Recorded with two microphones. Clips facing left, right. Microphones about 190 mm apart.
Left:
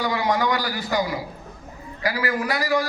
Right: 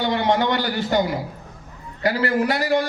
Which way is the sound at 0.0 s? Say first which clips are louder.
Right 3 dB; 25° right (ahead or behind).